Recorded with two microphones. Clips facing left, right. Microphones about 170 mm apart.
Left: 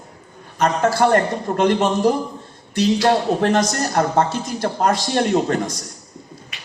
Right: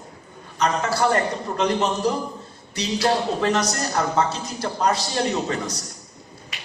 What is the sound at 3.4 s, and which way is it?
A man's voice, 50° left (ahead or behind).